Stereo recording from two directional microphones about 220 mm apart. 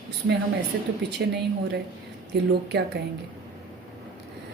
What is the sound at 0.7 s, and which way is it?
Speech, 50° right (ahead or behind).